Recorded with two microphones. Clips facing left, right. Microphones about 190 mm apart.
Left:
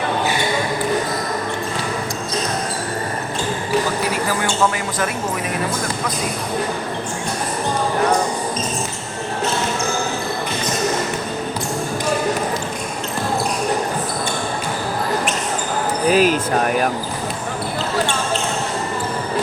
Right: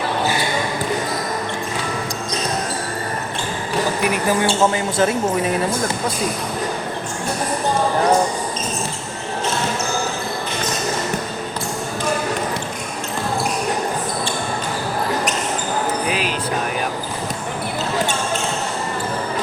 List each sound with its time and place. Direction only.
4.9 s speech: 25° right (ahead or behind)
16.0 s music: 45° left (ahead or behind)